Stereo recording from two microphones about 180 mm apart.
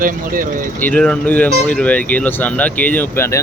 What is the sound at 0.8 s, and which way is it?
Speech, 5° left (ahead or behind).